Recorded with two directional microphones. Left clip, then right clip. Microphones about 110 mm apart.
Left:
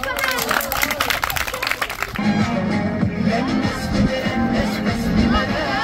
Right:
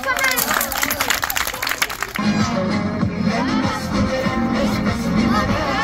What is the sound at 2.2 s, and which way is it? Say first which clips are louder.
Music: right 1 dB; 60° right (ahead or behind).